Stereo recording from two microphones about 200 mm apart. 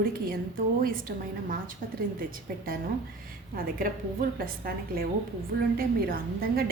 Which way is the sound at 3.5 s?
45° right (ahead or behind).